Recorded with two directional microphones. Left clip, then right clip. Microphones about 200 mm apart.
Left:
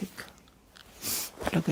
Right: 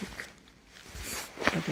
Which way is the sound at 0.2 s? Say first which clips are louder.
Right 1 dB; 30° left (ahead or behind).